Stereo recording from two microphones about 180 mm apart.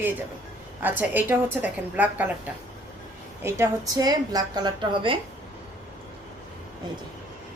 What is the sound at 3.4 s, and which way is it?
A woman's voice, 15° right (ahead or behind).